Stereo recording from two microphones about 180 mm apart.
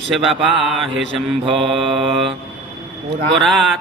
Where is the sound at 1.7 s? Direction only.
30° right (ahead or behind).